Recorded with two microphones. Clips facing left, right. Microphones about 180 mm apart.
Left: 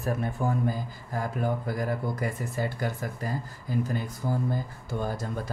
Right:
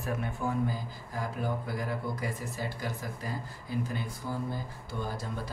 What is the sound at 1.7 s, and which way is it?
Speech, 50° left (ahead or behind).